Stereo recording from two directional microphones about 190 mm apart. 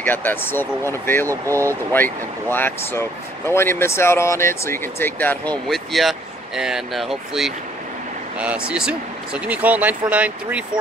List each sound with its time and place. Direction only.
0.0 s speech: 10° left (ahead or behind)
1.2 s speech: 15° right (ahead or behind)
1.9 s speech: 10° left (ahead or behind); by 10.6 s 5° right (ahead or behind)